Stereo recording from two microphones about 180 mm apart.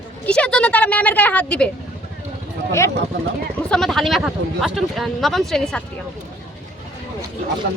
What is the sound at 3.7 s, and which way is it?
A woman's voice, centre (ahead or behind).